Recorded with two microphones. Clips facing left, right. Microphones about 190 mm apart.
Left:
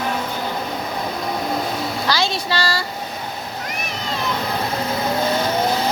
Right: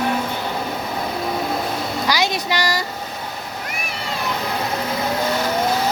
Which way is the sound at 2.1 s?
15° right (ahead or behind).